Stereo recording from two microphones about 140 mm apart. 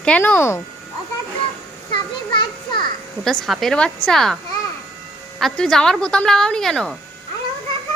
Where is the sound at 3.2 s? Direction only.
Centre (ahead or behind).